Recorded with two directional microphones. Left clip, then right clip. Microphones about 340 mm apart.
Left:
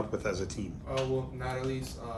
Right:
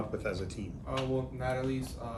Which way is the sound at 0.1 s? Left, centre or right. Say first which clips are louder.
Left 3 dB; centre.